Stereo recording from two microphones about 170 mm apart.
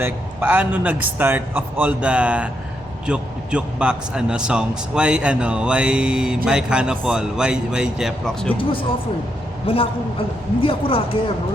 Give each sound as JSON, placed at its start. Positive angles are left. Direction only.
{"t": 0.0, "sound": "a man's voice", "side_deg": -10}
{"t": 9.6, "sound": "a man's voice", "side_deg": 35}